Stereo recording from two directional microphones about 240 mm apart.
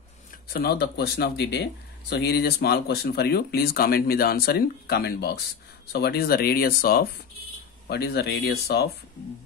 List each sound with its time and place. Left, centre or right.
0.5 s speech: left